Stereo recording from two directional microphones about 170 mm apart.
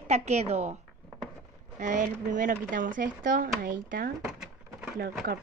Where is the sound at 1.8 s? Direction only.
45° right (ahead or behind).